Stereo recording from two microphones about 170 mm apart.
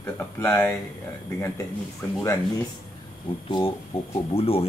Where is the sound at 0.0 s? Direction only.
15° left (ahead or behind).